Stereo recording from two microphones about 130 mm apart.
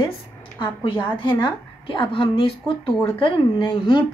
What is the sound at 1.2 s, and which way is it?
A woman's voice, 35° left (ahead or behind).